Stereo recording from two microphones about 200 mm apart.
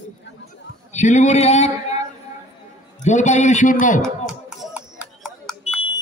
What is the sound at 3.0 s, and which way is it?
A man's voice, 35° left (ahead or behind).